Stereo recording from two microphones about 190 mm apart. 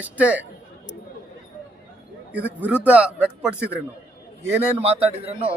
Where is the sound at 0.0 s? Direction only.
5° right (ahead or behind).